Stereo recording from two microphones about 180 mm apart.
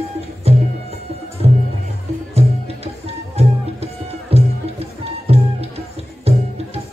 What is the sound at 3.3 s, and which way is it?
Music, 35° right (ahead or behind).